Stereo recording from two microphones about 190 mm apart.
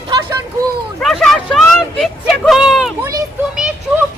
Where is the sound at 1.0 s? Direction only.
Centre (ahead or behind).